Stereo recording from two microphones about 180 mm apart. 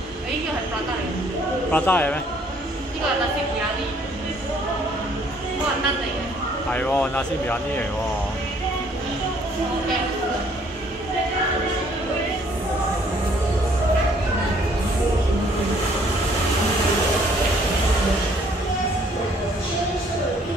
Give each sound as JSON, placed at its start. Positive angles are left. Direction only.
{"t": 1.7, "sound": "speech", "side_deg": 10}
{"t": 6.7, "sound": "speech", "side_deg": 10}